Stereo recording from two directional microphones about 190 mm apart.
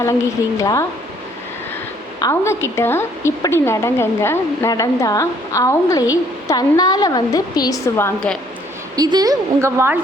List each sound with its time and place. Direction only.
0.0 s a woman's voice: 15° left (ahead or behind)
2.1 s a woman's voice: 15° left (ahead or behind)
9.0 s a woman's voice: 20° right (ahead or behind)